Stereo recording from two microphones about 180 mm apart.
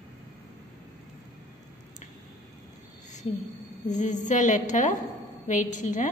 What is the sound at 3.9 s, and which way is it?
A woman's voice, 45° left (ahead or behind).